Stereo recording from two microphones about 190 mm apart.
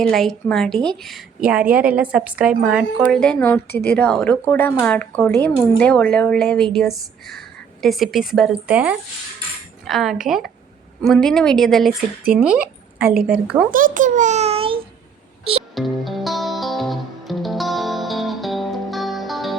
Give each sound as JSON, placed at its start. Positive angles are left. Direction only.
{"t": 0.0, "sound": "a woman's voice", "side_deg": 0}
{"t": 13.7, "sound": "a child's voice", "side_deg": -45}
{"t": 15.7, "sound": "music", "side_deg": 0}